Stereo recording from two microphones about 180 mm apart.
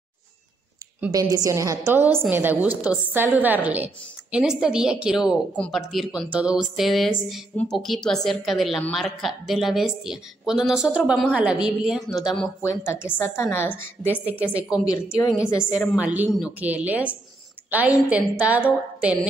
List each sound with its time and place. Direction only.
1.1 s a woman's voice: 20° right (ahead or behind); by 12.5 s centre (ahead or behind)
12.6 s a woman's voice: 15° left (ahead or behind)
14.5 s a woman's voice: 5° right (ahead or behind)
14.9 s a woman's voice: 20° left (ahead or behind)
16.0 s a woman's voice: 10° right (ahead or behind)